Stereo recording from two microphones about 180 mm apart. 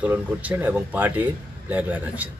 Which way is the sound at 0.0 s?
10° right (ahead or behind).